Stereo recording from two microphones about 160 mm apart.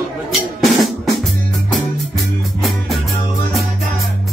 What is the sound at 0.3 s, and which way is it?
Drum kit, centre (ahead or behind).